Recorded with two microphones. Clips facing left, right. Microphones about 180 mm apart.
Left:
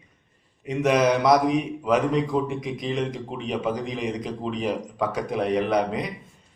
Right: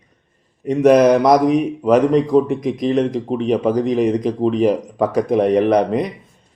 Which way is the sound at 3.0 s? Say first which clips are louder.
Right 10 dB; 45° right (ahead or behind).